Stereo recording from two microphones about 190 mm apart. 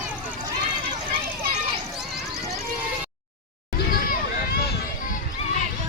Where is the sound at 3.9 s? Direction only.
50° left (ahead or behind).